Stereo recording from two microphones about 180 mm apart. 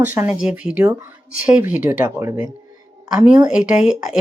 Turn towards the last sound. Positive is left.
turn(degrees=-5)  # may be behind; listen again after turning